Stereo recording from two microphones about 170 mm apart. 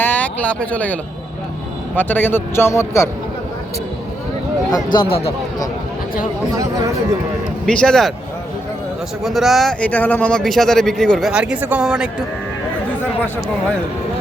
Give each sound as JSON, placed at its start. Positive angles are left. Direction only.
{"t": 0.0, "sound": "speech", "side_deg": 10}
{"t": 2.0, "sound": "a man's voice", "side_deg": 10}
{"t": 4.7, "sound": "speech", "side_deg": 25}
{"t": 6.6, "sound": "speech", "side_deg": -20}
{"t": 7.7, "sound": "a man's voice", "side_deg": 5}
{"t": 9.2, "sound": "a man's voice", "side_deg": 0}